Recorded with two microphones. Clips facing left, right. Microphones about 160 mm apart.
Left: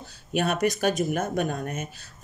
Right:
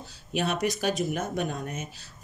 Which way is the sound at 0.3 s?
50° left (ahead or behind).